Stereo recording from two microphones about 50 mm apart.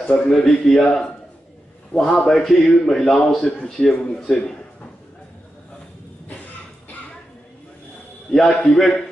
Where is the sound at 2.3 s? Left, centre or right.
Centre.